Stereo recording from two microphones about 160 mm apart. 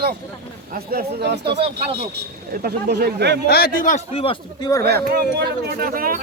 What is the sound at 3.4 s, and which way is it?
Speech, 75° left (ahead or behind).